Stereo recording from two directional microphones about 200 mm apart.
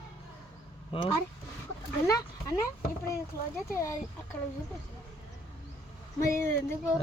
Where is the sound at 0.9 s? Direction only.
30° left (ahead or behind).